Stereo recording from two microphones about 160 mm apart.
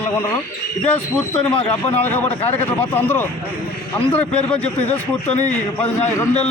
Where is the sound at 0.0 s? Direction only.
15° left (ahead or behind).